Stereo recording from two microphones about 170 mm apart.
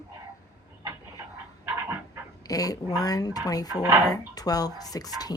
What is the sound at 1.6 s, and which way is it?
Dog, 15° right (ahead or behind).